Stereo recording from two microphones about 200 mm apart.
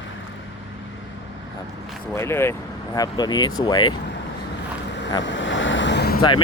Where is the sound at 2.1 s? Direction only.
15° left (ahead or behind).